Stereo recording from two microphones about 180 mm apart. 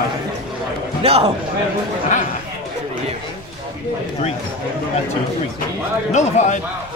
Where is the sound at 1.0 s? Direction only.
35° right (ahead or behind).